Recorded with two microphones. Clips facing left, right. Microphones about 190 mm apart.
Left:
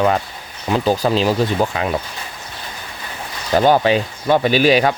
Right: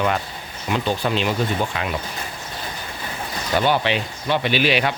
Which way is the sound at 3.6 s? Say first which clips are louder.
Left 6 dB; 40° left (ahead or behind).